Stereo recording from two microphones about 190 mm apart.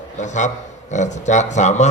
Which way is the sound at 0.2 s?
40° left (ahead or behind).